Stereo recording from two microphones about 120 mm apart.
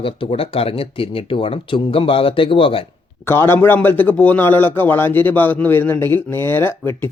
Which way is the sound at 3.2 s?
20° left (ahead or behind).